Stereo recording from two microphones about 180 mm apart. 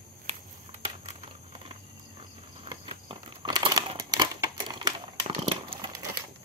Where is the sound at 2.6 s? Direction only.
30° right (ahead or behind).